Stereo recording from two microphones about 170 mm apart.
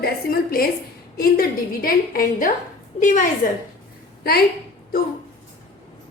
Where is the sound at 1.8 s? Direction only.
55° left (ahead or behind).